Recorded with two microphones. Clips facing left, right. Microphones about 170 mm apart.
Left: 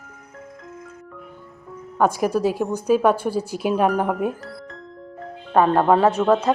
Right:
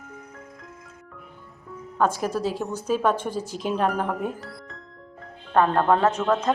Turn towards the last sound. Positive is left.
turn(degrees=10)  # may be behind; listen again after turning